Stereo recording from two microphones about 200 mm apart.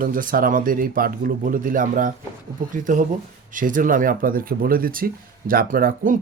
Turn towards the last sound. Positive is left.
turn(degrees=-45)  # may be behind; listen again after turning